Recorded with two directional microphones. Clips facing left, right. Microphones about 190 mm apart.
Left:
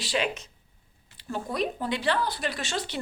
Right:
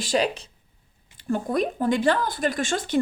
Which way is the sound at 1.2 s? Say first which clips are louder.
Right 6 dB; 50° right (ahead or behind).